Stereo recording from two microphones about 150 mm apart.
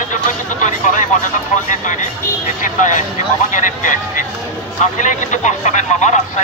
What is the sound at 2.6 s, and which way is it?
Music, 55° left (ahead or behind).